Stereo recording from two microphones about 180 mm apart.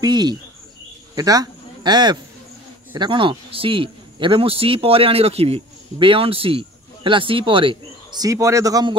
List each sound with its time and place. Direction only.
0.0 s a man's voice: 25° right (ahead or behind)
8.2 s speech: 15° right (ahead or behind)